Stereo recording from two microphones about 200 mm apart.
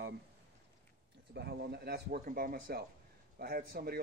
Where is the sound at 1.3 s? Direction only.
55° right (ahead or behind).